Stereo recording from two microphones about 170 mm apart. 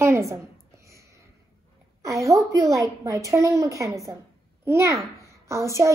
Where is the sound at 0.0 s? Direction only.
15° right (ahead or behind).